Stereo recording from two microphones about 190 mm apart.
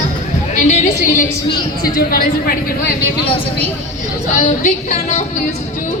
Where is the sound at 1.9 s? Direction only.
50° left (ahead or behind).